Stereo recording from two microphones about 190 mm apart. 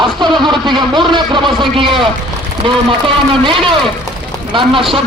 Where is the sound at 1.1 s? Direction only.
25° right (ahead or behind).